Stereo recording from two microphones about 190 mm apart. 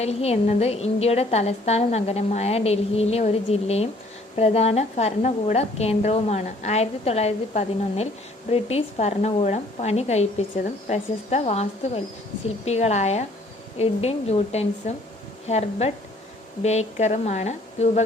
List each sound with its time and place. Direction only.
0.0 s a woman's voice: 35° left (ahead or behind)